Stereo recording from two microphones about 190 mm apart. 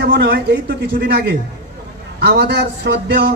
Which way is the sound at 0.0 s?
65° right (ahead or behind).